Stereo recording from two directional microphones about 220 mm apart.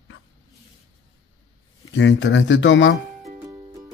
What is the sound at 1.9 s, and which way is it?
Speech, 55° left (ahead or behind).